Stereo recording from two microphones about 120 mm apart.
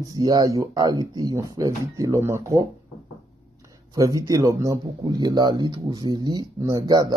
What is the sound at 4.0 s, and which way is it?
Speech, 30° right (ahead or behind).